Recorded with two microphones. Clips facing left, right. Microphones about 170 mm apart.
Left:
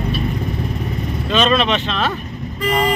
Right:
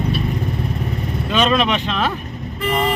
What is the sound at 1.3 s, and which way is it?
Speech, 15° right (ahead or behind).